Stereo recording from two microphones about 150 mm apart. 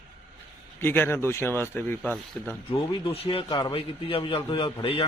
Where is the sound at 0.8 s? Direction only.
15° left (ahead or behind).